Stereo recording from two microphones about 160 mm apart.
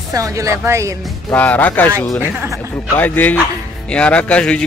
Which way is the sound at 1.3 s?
10° left (ahead or behind).